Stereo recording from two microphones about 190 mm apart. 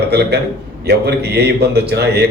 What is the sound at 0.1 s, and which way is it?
A man's voice, 60° right (ahead or behind).